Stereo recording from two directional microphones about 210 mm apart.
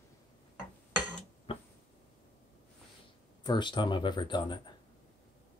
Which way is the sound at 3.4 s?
20° left (ahead or behind).